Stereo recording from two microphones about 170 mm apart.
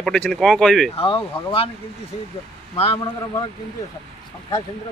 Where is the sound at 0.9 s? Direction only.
30° left (ahead or behind).